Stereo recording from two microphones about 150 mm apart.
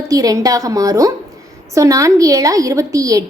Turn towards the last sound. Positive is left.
turn(degrees=-25)  # may be behind; listen again after turning